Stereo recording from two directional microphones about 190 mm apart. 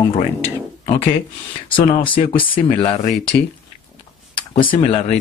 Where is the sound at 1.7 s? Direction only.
25° left (ahead or behind).